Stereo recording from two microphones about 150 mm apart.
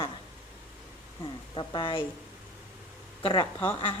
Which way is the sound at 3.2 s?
35° left (ahead or behind).